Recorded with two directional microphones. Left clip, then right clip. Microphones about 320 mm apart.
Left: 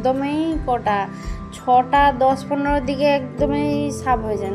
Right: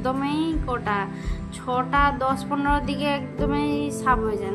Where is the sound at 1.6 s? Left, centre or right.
Centre.